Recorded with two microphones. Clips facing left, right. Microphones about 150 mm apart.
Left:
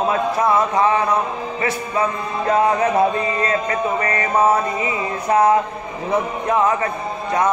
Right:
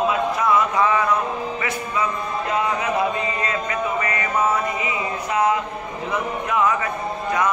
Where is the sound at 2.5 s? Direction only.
40° left (ahead or behind).